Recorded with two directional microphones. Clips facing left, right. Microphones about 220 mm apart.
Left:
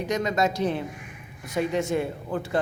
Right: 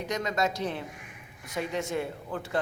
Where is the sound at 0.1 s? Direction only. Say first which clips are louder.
Left 5 dB; 15° left (ahead or behind).